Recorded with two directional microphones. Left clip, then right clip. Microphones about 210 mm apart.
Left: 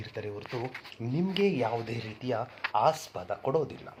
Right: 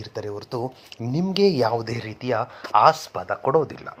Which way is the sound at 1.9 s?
25° right (ahead or behind).